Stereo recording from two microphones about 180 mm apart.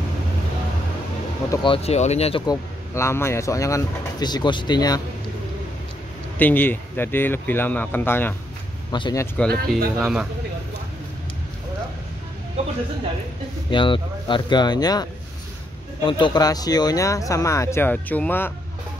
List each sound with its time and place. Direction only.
1.5 s speech: 30° left (ahead or behind)
2.4 s speech: 20° left (ahead or behind)
6.3 s speech: 10° left (ahead or behind)
8.9 s speech: 25° left (ahead or behind)
9.9 s speech: centre (ahead or behind)
13.7 s speech: 30° left (ahead or behind)
16.1 s speech: 25° left (ahead or behind); by 18.5 s 10° left (ahead or behind)